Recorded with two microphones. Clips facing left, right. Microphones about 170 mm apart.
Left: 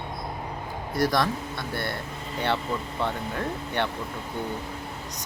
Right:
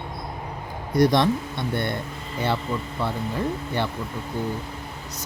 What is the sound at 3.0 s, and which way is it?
Speech, 10° right (ahead or behind).